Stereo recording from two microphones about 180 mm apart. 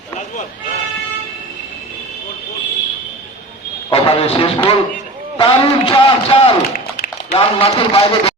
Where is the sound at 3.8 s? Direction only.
30° left (ahead or behind).